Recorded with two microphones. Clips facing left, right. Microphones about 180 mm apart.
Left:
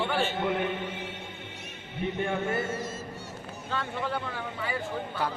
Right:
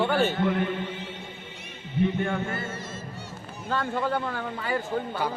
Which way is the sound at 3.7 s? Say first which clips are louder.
Right 5 dB; 50° right (ahead or behind).